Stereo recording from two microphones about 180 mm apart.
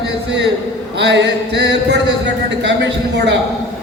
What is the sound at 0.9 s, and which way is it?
A man's voice, 75° right (ahead or behind).